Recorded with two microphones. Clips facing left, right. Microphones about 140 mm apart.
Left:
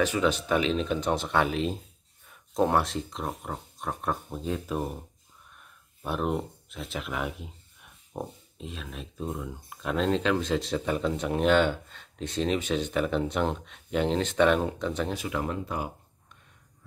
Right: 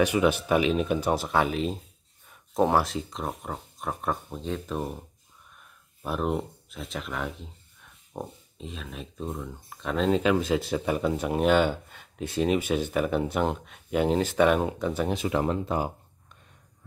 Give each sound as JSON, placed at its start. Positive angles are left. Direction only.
{"t": 0.0, "sound": "speech", "side_deg": -10}
{"t": 5.6, "sound": "a sound", "side_deg": 0}
{"t": 8.1, "sound": "speech", "side_deg": 0}
{"t": 15.1, "sound": "speech", "side_deg": -30}